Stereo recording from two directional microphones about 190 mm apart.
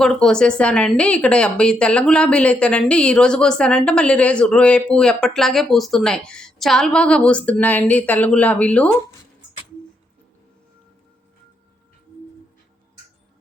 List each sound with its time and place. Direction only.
0.0 s a woman's voice: 5° left (ahead or behind)